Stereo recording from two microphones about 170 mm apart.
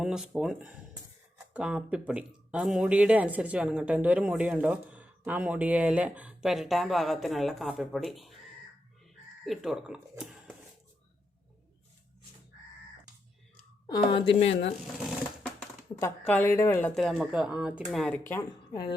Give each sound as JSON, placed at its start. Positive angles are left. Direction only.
{"t": 0.0, "sound": "speech", "side_deg": -5}
{"t": 9.4, "sound": "speech", "side_deg": 0}
{"t": 13.8, "sound": "speech", "side_deg": 25}
{"t": 16.2, "sound": "speech", "side_deg": 10}
{"t": 16.9, "sound": "speech", "side_deg": 0}
{"t": 18.0, "sound": "speech", "side_deg": 10}